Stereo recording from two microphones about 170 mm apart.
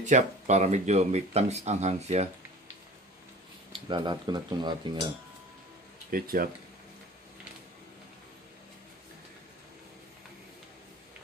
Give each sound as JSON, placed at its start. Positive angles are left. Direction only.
{"t": 0.0, "sound": "speech", "side_deg": -45}
{"t": 3.9, "sound": "speech", "side_deg": -25}
{"t": 6.1, "sound": "speech", "side_deg": -60}